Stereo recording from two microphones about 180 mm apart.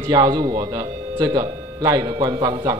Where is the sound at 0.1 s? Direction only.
25° right (ahead or behind).